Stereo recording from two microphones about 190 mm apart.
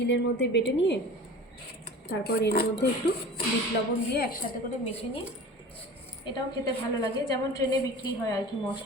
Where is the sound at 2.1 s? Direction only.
55° left (ahead or behind).